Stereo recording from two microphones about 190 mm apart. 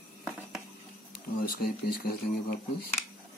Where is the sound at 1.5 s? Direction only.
50° left (ahead or behind).